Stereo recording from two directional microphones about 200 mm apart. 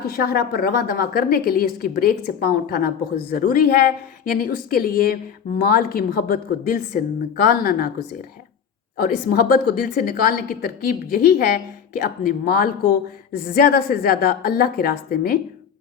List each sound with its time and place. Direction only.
0.0 s a woman's voice: 50° left (ahead or behind)
9.0 s a woman's voice: 45° left (ahead or behind)